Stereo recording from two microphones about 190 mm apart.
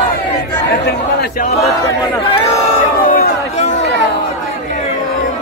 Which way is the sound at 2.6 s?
40° left (ahead or behind).